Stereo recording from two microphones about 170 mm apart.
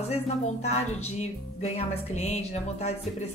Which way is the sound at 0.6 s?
40° left (ahead or behind).